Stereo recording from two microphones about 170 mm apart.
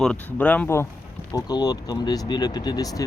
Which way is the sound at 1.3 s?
25° left (ahead or behind).